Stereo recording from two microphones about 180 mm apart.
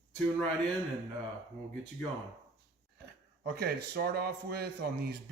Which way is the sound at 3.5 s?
60° right (ahead or behind).